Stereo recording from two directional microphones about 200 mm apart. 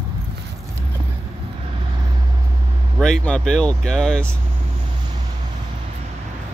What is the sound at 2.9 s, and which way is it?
Speech, 5° left (ahead or behind).